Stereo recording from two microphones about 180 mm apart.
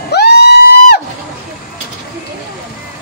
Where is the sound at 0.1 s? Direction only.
65° left (ahead or behind).